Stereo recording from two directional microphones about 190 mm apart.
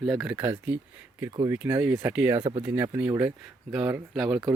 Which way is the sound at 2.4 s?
25° right (ahead or behind).